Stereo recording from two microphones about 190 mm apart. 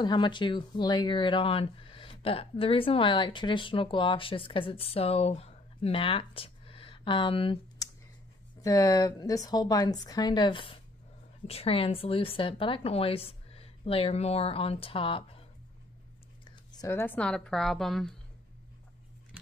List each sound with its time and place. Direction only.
0.0 s a woman's voice: 25° left (ahead or behind)
16.8 s a woman's voice: 10° left (ahead or behind)